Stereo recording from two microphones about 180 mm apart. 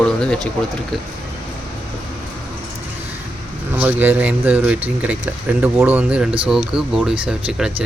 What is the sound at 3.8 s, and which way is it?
Speech, 10° right (ahead or behind).